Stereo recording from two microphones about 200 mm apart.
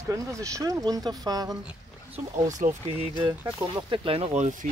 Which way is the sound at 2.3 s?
40° right (ahead or behind).